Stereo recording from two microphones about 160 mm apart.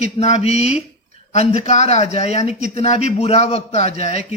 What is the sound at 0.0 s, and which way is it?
A man's voice, 45° left (ahead or behind).